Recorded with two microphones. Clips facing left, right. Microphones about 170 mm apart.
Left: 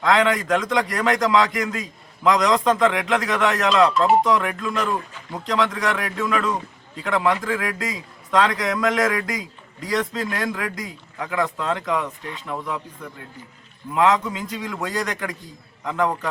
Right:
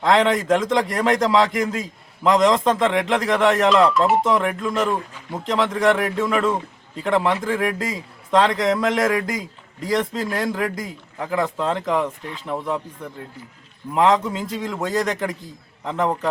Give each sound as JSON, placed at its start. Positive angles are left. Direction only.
{"t": 0.0, "sound": "a man's voice", "side_deg": -30}
{"t": 3.9, "sound": "speech", "side_deg": 0}
{"t": 4.3, "sound": "a man's voice", "side_deg": -25}
{"t": 13.9, "sound": "a man's voice", "side_deg": -30}